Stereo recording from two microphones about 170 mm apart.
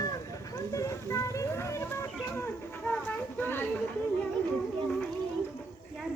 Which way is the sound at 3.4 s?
10° left (ahead or behind).